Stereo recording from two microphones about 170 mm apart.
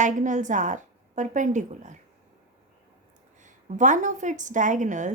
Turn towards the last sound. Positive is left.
turn(degrees=-45)  # may be behind; listen again after turning